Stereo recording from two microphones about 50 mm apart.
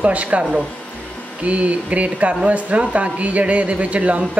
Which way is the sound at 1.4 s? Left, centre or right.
Right.